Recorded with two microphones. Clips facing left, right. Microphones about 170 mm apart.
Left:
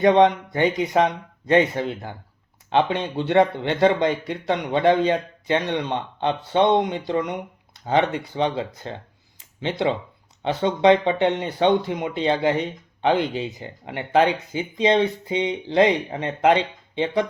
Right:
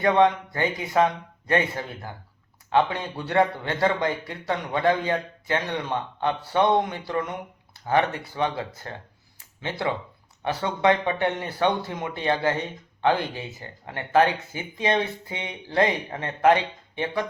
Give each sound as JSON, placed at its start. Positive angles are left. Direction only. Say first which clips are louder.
{"t": 0.0, "sound": "speech", "louder": "left 4 dB", "side_deg": 20}
{"t": 9.4, "sound": "a sound", "louder": "left 5 dB", "side_deg": 20}
{"t": 10.4, "sound": "speech", "louder": "left 5 dB", "side_deg": 20}